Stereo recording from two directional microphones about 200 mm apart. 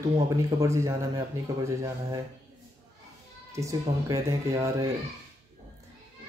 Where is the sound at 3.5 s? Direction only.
15° right (ahead or behind).